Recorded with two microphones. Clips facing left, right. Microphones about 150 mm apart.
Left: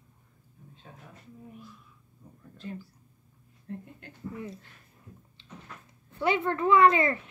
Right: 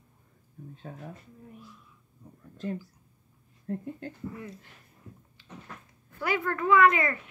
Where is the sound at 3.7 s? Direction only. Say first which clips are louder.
Right 6 dB; 45° right (ahead or behind).